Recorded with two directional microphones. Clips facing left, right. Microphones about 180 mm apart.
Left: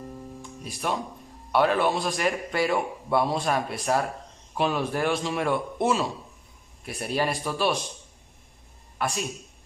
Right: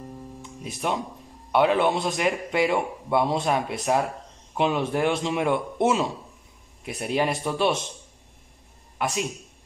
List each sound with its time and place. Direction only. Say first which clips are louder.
0.4 s music: right 3 dB; 20° right (ahead or behind)
1.5 s a man's voice: right 2 dB; 20° right (ahead or behind)
8.9 s a sound: right 2 dB; 20° right (ahead or behind)